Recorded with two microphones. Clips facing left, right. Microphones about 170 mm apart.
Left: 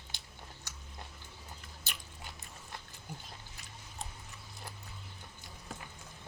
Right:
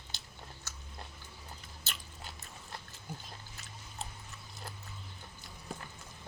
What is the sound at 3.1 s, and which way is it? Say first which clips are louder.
Dog: right 2 dB; 15° left (ahead or behind).